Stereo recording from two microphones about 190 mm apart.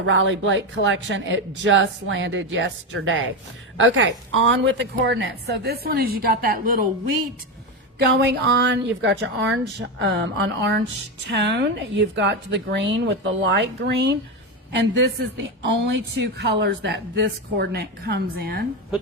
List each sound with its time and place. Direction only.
0.0 s speech: 85° right
3.8 s a woman's voice: 80° right; by 6.6 s 50° right (ahead or behind)
7.9 s a woman's voice: 60° right (ahead or behind)